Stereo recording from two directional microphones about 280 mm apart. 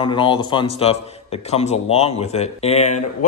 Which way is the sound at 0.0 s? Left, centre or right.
Centre.